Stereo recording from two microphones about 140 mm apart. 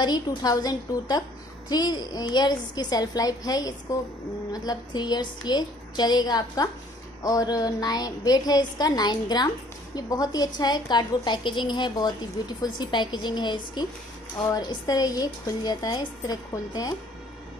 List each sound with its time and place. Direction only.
0.0 s a woman's voice: 30° left (ahead or behind)